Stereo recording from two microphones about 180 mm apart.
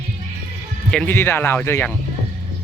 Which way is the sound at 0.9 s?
10° left (ahead or behind).